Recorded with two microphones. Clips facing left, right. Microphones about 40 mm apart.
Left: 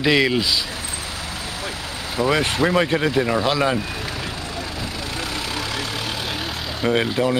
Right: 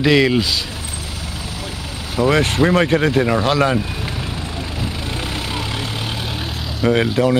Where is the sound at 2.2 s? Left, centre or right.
Centre.